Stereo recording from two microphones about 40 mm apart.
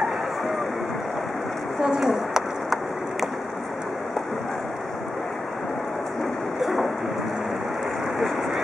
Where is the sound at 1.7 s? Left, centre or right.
Centre.